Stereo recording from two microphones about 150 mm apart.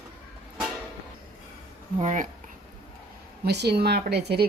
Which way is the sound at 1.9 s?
55° right (ahead or behind).